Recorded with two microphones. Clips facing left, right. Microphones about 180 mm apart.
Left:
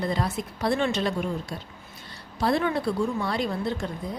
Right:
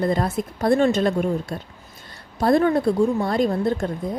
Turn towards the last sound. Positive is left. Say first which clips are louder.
# right 6 dB
turn(degrees=-50)  # may be behind; listen again after turning